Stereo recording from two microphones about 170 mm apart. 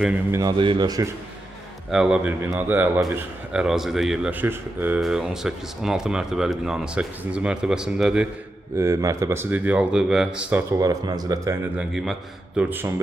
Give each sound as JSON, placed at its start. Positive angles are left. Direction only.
{"t": 0.0, "sound": "speech", "side_deg": -10}
{"t": 0.4, "sound": "speech", "side_deg": -25}
{"t": 1.9, "sound": "speech", "side_deg": -5}
{"t": 8.7, "sound": "speech", "side_deg": -15}
{"t": 10.7, "sound": "speech", "side_deg": -20}
{"t": 11.9, "sound": "speech", "side_deg": -5}